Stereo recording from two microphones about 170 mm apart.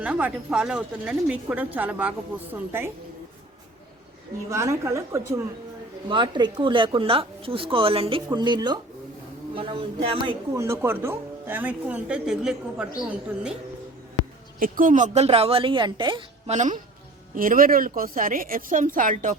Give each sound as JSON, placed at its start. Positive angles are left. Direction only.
{"t": 0.0, "sound": "speech", "side_deg": -10}
{"t": 4.4, "sound": "speech", "side_deg": -15}
{"t": 6.1, "sound": "a woman's voice", "side_deg": -25}
{"t": 10.5, "sound": "speech", "side_deg": -15}
{"t": 14.6, "sound": "a woman's voice", "side_deg": -55}
{"t": 16.5, "sound": "a woman's voice", "side_deg": -45}